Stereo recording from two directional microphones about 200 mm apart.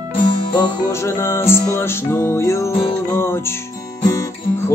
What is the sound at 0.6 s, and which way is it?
Music, 15° left (ahead or behind).